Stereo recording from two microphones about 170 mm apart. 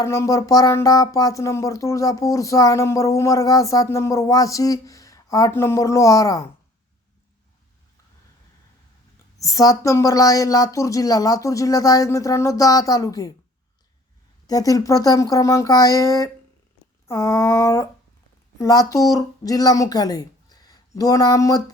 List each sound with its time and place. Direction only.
0.0 s speech: 20° left (ahead or behind)
9.4 s speech: 20° left (ahead or behind)
14.4 s speech: 20° left (ahead or behind)
17.1 s a sound: 15° left (ahead or behind)
18.6 s speech: 20° left (ahead or behind)